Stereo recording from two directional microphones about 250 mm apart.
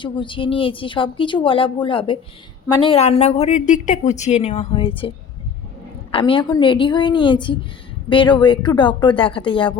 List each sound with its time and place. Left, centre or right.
0.0 s a woman's voice: centre